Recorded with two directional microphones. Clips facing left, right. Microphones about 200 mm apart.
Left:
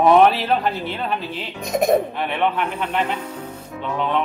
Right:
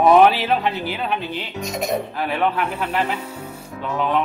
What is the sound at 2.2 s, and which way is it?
A man's voice, centre (ahead or behind).